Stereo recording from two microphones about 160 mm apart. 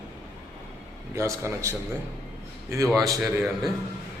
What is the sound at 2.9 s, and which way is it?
Speech, 20° right (ahead or behind).